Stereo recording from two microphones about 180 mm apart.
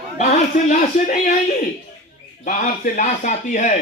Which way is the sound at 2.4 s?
45° left (ahead or behind).